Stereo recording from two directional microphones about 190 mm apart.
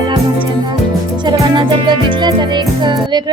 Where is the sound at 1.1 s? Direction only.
25° right (ahead or behind).